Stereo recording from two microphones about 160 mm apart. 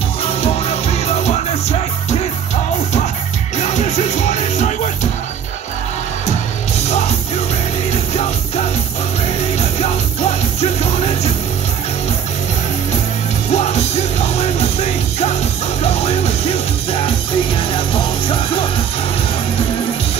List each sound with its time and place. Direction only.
0.2 s music: 40° left (ahead or behind)
3.5 s music: 45° left (ahead or behind)
10.6 s music: 40° left (ahead or behind)
13.5 s music: 45° left (ahead or behind)